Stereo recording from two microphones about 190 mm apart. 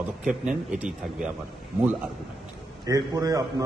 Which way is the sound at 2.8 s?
20° right (ahead or behind).